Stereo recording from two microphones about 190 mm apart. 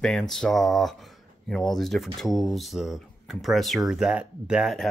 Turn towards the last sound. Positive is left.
turn(degrees=0)  # may be behind; listen again after turning